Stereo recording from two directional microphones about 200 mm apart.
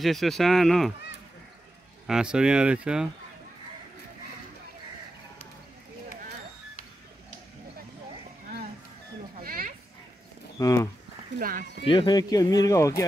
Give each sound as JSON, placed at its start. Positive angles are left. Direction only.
{"t": 0.0, "sound": "speech", "side_deg": 0}
{"t": 2.0, "sound": "speech", "side_deg": -5}
{"t": 9.4, "sound": "a sound", "side_deg": -45}
{"t": 10.6, "sound": "speech", "side_deg": 15}
{"t": 11.3, "sound": "speech", "side_deg": -45}
{"t": 11.8, "sound": "speech", "side_deg": 25}